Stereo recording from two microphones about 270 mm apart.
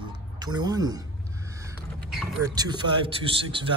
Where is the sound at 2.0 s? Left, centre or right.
Centre.